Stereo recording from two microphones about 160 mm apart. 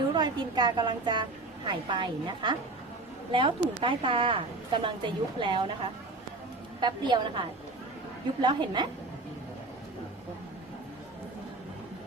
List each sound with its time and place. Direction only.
0.1 s a woman's voice: 25° right (ahead or behind)
6.7 s a woman's voice: 30° right (ahead or behind)